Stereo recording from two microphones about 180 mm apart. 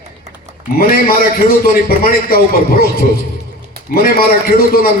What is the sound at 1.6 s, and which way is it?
Speech, 55° left (ahead or behind).